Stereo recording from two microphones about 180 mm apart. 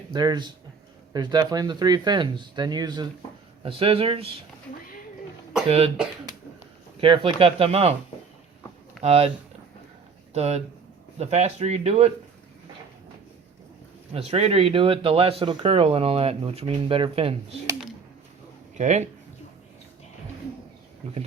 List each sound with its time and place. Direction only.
0.1 s speech: 25° right (ahead or behind)
5.6 s speech: 35° right (ahead or behind)
7.0 s speech: 30° right (ahead or behind)
9.0 s speech: 35° right (ahead or behind)
10.3 s speech: 35° right (ahead or behind)
14.1 s speech: 35° right (ahead or behind)
18.8 s speech: 40° right (ahead or behind)
21.0 s speech: 35° right (ahead or behind)